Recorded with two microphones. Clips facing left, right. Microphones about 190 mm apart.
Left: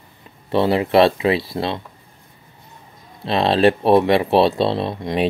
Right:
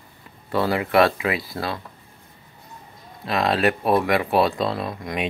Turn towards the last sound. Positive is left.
turn(degrees=25)  # may be behind; listen again after turning